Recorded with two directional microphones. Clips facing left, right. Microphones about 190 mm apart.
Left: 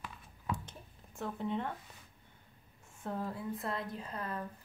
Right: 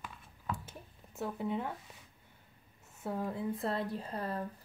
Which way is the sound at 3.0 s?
10° right (ahead or behind).